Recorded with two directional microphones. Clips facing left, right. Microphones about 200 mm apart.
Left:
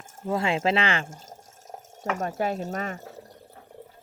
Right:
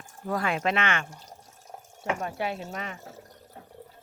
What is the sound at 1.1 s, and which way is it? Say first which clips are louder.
Water: left 3 dB; 45° left (ahead or behind).